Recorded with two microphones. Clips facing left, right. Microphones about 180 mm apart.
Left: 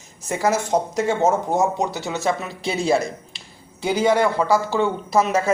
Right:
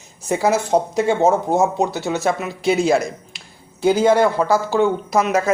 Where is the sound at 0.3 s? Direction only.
25° right (ahead or behind).